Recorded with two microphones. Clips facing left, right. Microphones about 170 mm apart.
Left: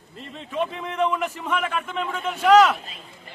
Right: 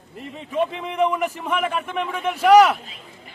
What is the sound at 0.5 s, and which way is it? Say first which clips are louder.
A man's voice: right 3 dB; 10° right (ahead or behind).